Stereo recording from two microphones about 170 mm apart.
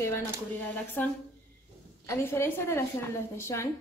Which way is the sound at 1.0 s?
10° left (ahead or behind).